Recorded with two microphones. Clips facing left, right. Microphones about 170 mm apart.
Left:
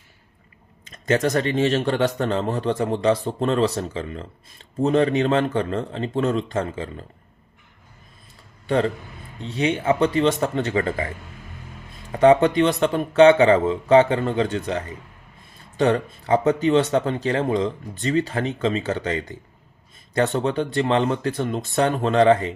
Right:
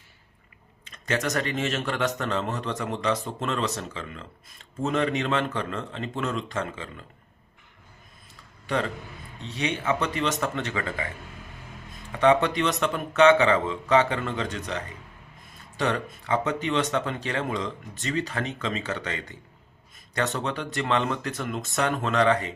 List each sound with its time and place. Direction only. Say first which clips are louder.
0.9 s speech: left 7 dB; 35° left (ahead or behind)
8.6 s a man's voice: left 7 dB; 35° left (ahead or behind)
12.1 s speech: left 6 dB; 35° left (ahead or behind)